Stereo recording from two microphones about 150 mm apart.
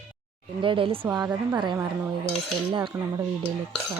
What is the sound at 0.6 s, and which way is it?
Cutlery, 35° right (ahead or behind).